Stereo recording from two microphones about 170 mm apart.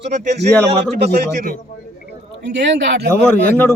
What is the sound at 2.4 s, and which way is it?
Speech, 90° right.